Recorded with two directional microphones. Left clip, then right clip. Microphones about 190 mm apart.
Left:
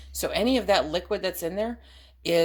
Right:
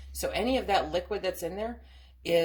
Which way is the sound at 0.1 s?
40° left (ahead or behind).